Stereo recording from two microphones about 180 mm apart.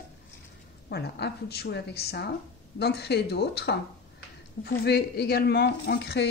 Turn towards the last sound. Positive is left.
turn(degrees=65)  # may be behind; listen again after turning